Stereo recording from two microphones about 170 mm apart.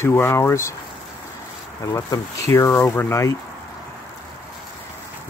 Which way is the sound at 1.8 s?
20° left (ahead or behind).